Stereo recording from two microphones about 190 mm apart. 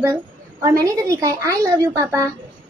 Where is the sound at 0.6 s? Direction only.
15° right (ahead or behind).